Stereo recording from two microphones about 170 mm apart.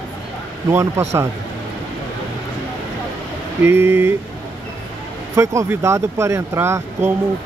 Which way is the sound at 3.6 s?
15° right (ahead or behind).